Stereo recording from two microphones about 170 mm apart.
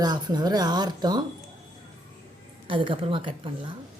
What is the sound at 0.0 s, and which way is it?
Speech, 25° right (ahead or behind).